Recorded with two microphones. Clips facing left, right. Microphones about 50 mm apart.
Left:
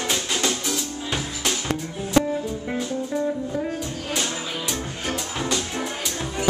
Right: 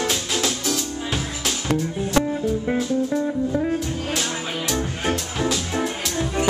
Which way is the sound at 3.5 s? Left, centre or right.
Centre.